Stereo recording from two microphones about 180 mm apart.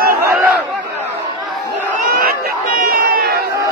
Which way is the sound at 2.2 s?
55° right (ahead or behind).